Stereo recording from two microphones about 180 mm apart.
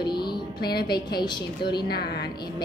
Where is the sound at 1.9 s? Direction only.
65° left (ahead or behind).